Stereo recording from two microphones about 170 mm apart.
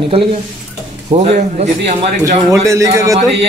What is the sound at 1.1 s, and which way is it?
Speech, 40° right (ahead or behind).